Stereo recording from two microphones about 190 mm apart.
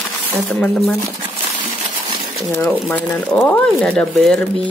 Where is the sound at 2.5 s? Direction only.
10° left (ahead or behind).